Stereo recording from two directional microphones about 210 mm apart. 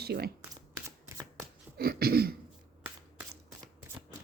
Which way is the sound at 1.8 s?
45° right (ahead or behind).